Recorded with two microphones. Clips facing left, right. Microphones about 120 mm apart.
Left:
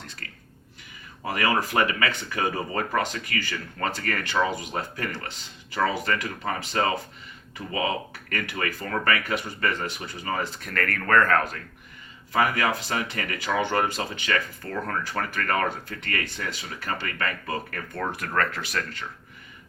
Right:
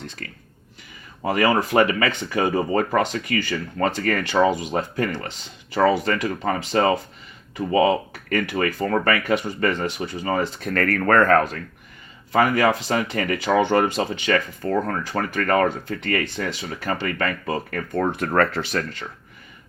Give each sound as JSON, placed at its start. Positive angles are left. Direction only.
{"t": 1.2, "sound": "speech", "side_deg": -30}
{"t": 9.2, "sound": "speech", "side_deg": -20}